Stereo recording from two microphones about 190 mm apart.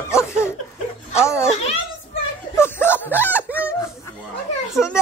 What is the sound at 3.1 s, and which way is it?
Speech, 10° right (ahead or behind).